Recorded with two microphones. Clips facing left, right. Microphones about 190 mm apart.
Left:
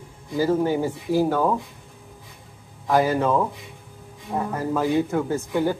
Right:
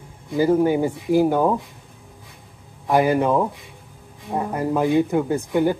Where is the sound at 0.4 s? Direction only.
15° right (ahead or behind).